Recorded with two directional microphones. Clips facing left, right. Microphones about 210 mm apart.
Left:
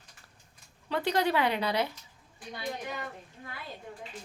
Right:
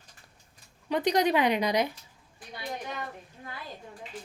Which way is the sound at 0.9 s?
15° right (ahead or behind).